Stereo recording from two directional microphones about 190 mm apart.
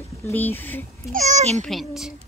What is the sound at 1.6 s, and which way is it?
Speech, centre (ahead or behind).